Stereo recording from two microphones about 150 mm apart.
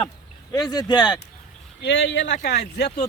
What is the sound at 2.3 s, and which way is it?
Speech, 90° left.